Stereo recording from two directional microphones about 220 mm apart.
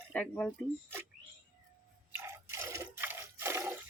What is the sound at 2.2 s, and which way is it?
Squish, 10° right (ahead or behind).